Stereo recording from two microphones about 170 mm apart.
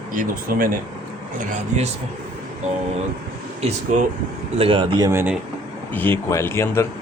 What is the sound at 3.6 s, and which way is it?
Speech, 45° right (ahead or behind).